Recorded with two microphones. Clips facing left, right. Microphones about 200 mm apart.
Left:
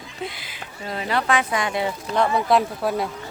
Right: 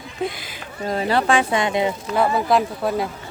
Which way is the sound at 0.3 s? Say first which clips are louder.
Right 5 dB; 45° right (ahead or behind).